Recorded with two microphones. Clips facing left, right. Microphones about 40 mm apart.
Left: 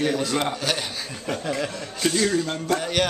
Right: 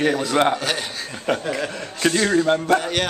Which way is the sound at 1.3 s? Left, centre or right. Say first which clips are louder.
Right 4 dB; right.